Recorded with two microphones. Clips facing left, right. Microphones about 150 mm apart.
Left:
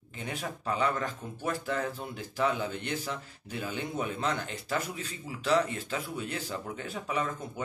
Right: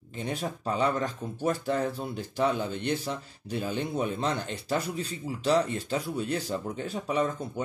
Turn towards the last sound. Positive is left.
turn(degrees=-30)  # may be behind; listen again after turning